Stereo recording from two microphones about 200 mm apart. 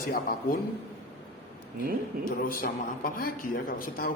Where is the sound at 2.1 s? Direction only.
50° right (ahead or behind).